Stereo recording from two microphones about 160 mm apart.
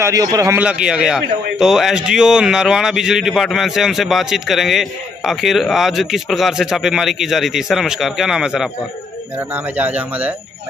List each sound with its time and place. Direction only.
0.0 s a man's voice: 20° right (ahead or behind)
0.6 s a man's voice: 5° right (ahead or behind)